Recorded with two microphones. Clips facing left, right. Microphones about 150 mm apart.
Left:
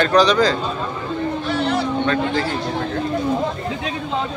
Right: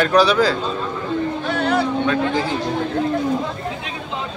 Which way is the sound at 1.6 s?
55° right (ahead or behind).